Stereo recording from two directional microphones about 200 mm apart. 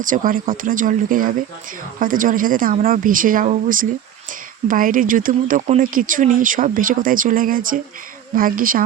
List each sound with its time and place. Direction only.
0.0 s speech: 40° right (ahead or behind)